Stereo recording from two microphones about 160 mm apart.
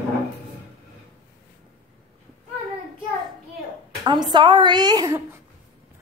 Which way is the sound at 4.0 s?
25° right (ahead or behind).